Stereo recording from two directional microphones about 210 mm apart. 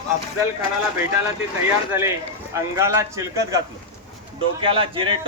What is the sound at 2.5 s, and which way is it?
A man's voice, 15° right (ahead or behind).